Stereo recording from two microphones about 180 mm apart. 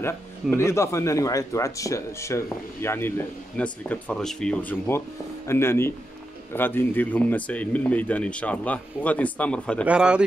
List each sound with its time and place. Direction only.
0.0 s speech: 15° left (ahead or behind)
9.8 s speech: 5° right (ahead or behind)